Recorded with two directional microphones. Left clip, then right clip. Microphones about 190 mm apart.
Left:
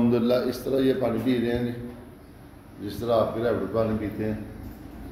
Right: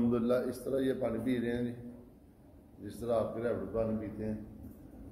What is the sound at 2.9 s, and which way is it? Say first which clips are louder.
Speech: left 9 dB; 10° left (ahead or behind).